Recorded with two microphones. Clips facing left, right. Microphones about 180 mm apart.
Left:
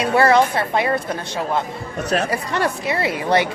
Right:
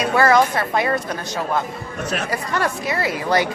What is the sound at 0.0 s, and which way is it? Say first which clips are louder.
A woman's voice: left 1 dB; 30° left (ahead or behind).